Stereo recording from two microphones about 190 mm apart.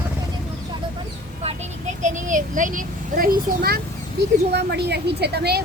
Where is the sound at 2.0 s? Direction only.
40° right (ahead or behind).